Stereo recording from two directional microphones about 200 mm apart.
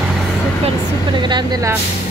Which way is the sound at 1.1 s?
20° right (ahead or behind).